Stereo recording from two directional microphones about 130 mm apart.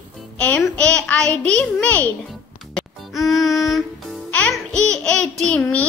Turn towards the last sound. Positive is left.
turn(degrees=10)  # may be behind; listen again after turning